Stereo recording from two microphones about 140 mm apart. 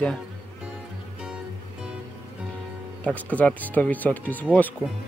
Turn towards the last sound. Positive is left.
turn(degrees=10)  # may be behind; listen again after turning